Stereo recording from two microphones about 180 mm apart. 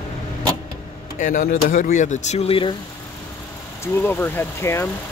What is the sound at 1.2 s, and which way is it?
Speech, 50° left (ahead or behind).